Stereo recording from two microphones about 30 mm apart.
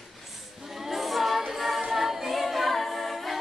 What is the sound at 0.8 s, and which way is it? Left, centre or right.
Choir, centre.